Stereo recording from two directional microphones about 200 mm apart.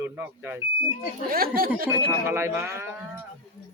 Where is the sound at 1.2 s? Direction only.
45° right (ahead or behind).